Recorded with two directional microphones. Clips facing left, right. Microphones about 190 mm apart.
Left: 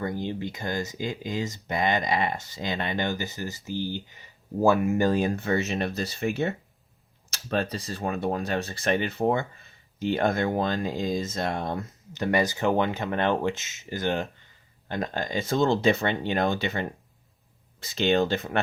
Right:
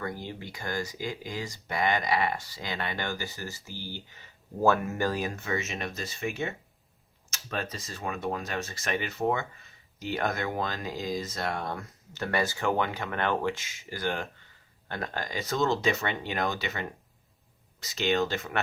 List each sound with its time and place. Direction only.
0.0 s speech: 20° left (ahead or behind)
5.0 s speech: 30° left (ahead or behind)